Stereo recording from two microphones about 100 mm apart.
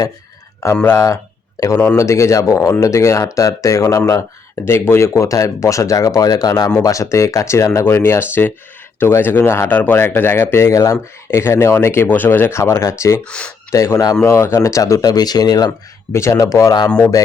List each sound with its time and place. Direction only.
0.9 s speech: 30° left (ahead or behind)
13.2 s speech: 10° left (ahead or behind)
13.7 s speech: 30° left (ahead or behind)
16.1 s speech: 30° left (ahead or behind)